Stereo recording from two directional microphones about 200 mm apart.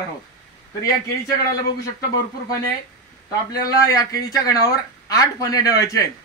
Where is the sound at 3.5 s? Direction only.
15° left (ahead or behind).